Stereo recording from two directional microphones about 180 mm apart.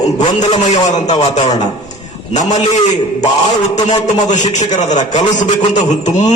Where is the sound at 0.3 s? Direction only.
40° left (ahead or behind).